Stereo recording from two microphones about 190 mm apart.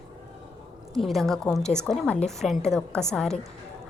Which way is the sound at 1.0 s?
Centre (ahead or behind).